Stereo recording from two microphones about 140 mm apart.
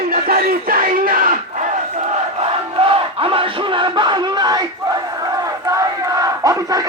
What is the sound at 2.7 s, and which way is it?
Crowd, 40° right (ahead or behind).